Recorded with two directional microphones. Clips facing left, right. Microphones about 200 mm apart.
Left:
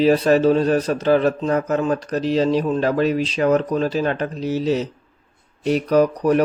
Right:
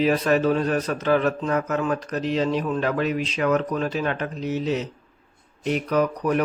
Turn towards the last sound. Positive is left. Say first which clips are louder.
# left 6 dB
turn(degrees=35)  # may be behind; listen again after turning